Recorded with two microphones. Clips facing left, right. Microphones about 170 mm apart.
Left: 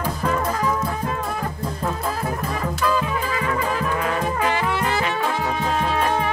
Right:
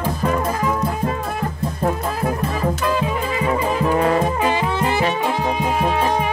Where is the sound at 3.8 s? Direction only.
35° right (ahead or behind).